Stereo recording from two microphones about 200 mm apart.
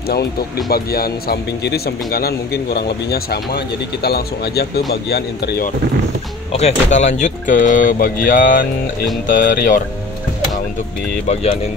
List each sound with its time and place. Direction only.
0.7 s speech: 50° left (ahead or behind)
6.5 s speech: 35° left (ahead or behind)